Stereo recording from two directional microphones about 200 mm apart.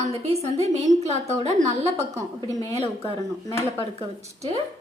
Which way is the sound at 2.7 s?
30° right (ahead or behind).